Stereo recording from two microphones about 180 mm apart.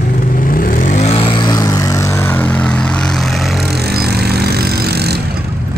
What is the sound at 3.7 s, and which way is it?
Vehicle, 60° right (ahead or behind).